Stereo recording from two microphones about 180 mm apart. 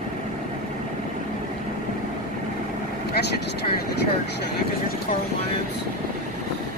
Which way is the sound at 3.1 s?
65° left (ahead or behind).